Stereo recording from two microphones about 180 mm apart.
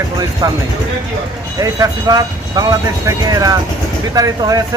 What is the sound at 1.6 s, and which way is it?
Speech, 20° right (ahead or behind).